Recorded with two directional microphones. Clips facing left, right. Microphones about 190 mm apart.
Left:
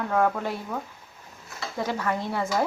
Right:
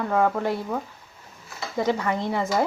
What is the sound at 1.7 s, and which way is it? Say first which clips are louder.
Speech: right 4 dB; 15° right (ahead or behind).